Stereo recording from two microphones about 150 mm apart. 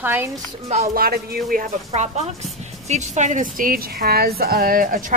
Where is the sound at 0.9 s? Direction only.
90° right.